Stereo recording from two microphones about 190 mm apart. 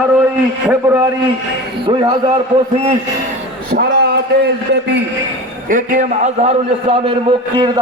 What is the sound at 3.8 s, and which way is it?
Speech, 55° right (ahead or behind).